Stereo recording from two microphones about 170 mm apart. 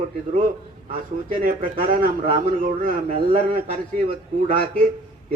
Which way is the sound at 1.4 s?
55° right (ahead or behind).